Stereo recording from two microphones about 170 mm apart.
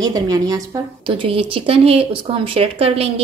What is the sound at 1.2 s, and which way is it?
Speech, 30° right (ahead or behind).